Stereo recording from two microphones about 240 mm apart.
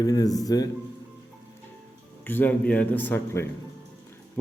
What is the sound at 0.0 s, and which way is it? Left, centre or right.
Speech, centre.